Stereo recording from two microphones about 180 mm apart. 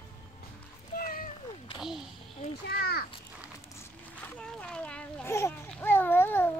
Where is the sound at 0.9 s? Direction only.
55° left (ahead or behind).